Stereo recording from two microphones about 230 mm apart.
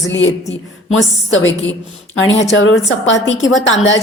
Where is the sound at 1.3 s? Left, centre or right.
Left.